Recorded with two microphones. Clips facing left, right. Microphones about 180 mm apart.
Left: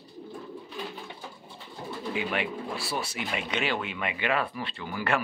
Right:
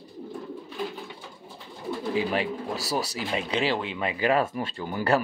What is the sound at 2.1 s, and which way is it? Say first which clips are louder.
Speech: right 4 dB; 35° right (ahead or behind).